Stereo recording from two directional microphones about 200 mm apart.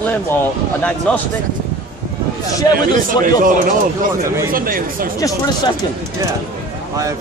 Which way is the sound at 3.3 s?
40° right (ahead or behind).